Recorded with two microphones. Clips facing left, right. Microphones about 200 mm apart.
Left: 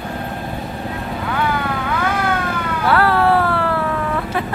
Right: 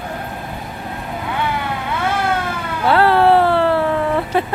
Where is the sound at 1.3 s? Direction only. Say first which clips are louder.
Left 1 dB; 25° right (ahead or behind).